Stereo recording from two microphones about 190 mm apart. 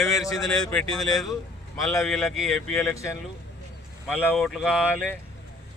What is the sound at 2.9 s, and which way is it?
Speech, 15° left (ahead or behind).